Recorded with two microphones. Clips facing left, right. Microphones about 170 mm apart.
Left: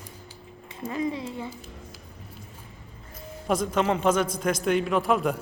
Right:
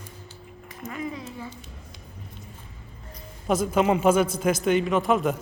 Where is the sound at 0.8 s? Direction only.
30° left (ahead or behind).